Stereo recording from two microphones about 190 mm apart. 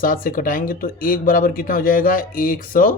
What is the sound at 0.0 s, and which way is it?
Speech, 45° left (ahead or behind).